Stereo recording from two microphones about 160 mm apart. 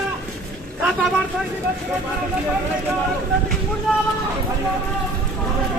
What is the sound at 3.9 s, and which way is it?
Speech, 5° left (ahead or behind).